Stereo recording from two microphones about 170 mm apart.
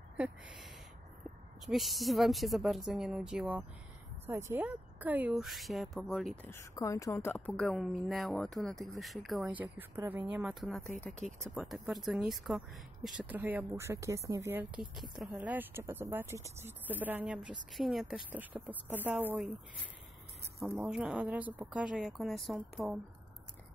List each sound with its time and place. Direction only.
0.2 s a woman's voice: 5° right (ahead or behind)
1.7 s speech: centre (ahead or behind)
6.4 s a woman's voice: 15° left (ahead or behind)
7.3 s a woman's voice: 5° left (ahead or behind)
20.7 s speech: 5° right (ahead or behind)